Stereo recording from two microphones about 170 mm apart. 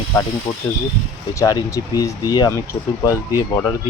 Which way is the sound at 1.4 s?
20° left (ahead or behind).